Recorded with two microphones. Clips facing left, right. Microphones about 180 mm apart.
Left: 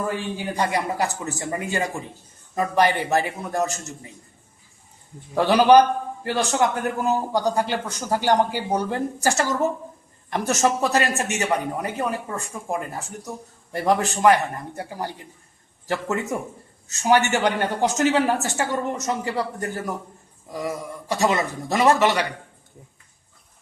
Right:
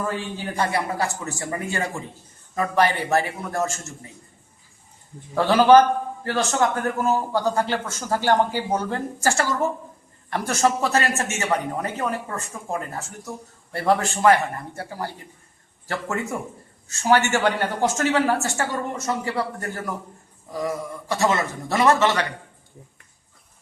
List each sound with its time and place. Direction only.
0.1 s a man's voice: 15° left (ahead or behind)
5.3 s a man's voice: 15° left (ahead or behind)